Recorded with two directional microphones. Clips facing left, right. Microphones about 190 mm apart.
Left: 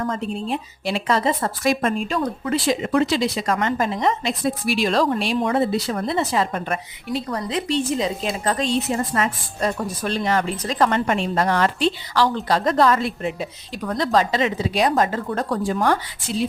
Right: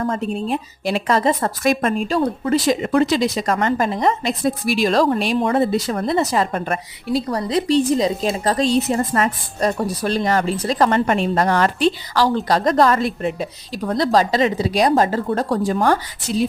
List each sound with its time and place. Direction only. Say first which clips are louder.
0.1 s a woman's voice: right 3 dB; 50° right (ahead or behind)
2.0 s speech: right 4 dB; 35° right (ahead or behind)